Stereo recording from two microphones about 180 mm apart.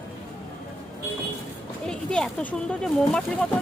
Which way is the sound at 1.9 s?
5° left (ahead or behind).